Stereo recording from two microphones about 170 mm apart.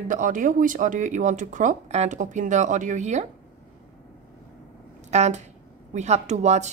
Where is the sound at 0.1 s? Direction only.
50° right (ahead or behind).